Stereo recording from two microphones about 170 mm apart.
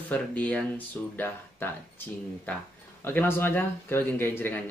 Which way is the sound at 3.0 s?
10° left (ahead or behind).